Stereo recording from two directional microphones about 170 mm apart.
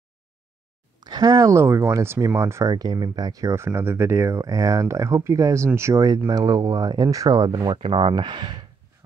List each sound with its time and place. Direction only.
1.0 s speech: 20° right (ahead or behind)